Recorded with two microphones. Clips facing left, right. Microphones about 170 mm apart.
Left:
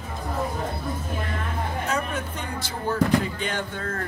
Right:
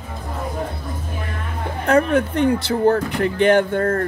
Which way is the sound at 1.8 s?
60° right (ahead or behind).